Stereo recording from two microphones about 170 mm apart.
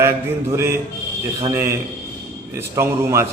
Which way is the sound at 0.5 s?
15° right (ahead or behind).